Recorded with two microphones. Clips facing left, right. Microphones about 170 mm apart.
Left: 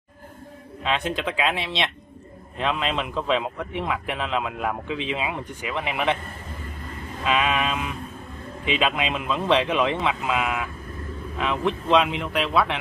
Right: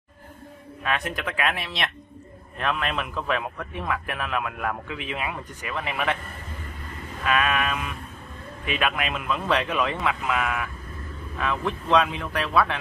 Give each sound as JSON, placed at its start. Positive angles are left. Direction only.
{"t": 0.8, "sound": "speech", "side_deg": 25}
{"t": 7.2, "sound": "speech", "side_deg": 20}